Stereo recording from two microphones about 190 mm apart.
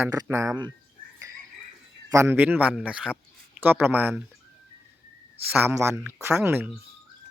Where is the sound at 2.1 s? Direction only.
15° right (ahead or behind).